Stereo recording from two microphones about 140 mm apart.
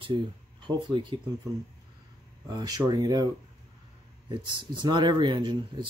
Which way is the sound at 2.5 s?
25° right (ahead or behind).